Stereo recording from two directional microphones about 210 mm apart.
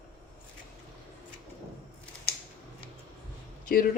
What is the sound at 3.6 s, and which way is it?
Speech, 45° left (ahead or behind).